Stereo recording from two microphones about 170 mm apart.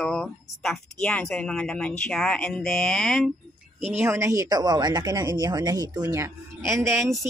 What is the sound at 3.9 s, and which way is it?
Speech, 15° right (ahead or behind).